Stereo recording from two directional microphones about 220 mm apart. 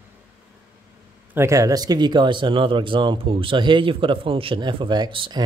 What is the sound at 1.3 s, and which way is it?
Speech, 10° right (ahead or behind).